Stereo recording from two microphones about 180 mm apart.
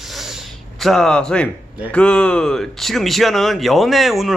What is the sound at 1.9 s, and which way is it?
Speech, 5° left (ahead or behind).